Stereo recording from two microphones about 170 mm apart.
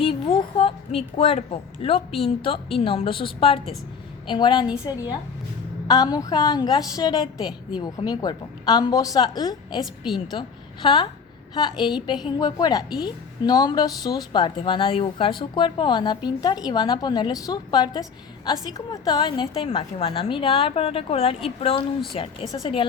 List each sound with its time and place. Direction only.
0.0 s a woman's voice: 30° left (ahead or behind)
9.8 s a woman's voice: centre (ahead or behind)
10.8 s a woman's voice: 25° left (ahead or behind)